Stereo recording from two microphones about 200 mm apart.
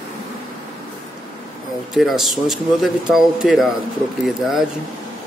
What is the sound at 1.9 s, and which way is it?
A man's voice, centre (ahead or behind).